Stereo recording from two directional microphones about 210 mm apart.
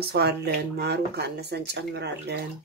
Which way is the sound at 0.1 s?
50° right (ahead or behind).